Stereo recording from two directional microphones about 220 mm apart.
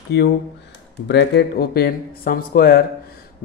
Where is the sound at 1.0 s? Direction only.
50° left (ahead or behind).